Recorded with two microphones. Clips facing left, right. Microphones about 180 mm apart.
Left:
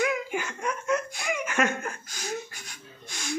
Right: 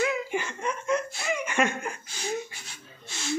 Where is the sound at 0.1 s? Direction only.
5° left (ahead or behind).